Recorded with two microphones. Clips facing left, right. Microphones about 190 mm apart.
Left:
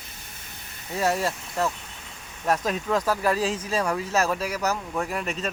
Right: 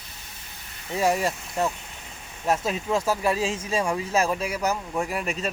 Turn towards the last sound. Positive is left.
turn(degrees=-5)  # may be behind; listen again after turning